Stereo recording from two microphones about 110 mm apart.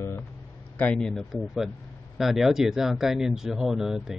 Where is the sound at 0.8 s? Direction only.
10° left (ahead or behind).